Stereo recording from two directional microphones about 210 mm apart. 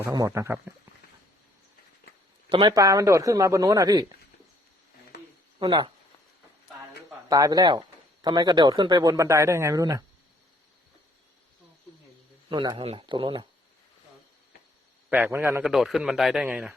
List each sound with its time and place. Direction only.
0.0 s speech: 15° right (ahead or behind)
2.5 s speech: 20° right (ahead or behind)
5.5 s speech: 20° right (ahead or behind)
7.3 s speech: 15° right (ahead or behind)
12.5 s speech: 20° right (ahead or behind)
15.1 s a man's voice: 10° right (ahead or behind)